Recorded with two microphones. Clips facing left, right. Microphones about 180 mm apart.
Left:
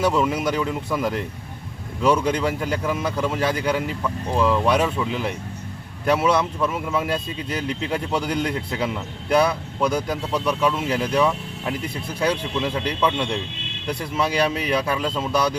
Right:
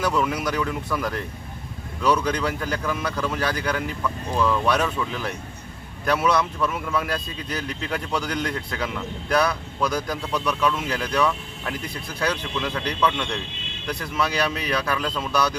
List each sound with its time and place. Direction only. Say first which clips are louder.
0.0 s speech: left 3 dB; 25° left (ahead or behind)